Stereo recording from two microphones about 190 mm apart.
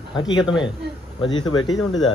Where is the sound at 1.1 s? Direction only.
25° left (ahead or behind).